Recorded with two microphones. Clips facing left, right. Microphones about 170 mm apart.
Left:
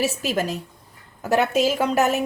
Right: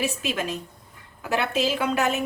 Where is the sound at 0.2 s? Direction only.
40° left (ahead or behind).